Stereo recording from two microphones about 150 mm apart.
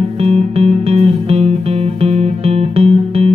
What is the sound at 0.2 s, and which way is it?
Music, 45° right (ahead or behind).